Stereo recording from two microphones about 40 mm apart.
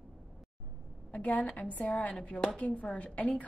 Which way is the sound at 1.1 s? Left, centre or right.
Left.